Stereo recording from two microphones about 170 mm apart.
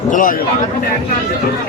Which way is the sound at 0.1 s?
50° left (ahead or behind).